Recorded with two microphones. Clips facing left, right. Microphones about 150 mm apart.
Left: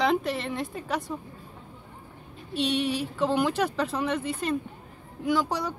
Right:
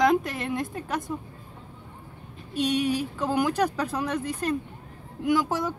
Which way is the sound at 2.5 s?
45° right (ahead or behind).